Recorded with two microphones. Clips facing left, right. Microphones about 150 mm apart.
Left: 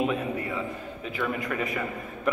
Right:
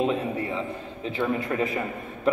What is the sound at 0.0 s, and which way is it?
A man's voice, 30° right (ahead or behind).